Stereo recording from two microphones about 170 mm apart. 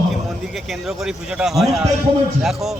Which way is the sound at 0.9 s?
Centre (ahead or behind).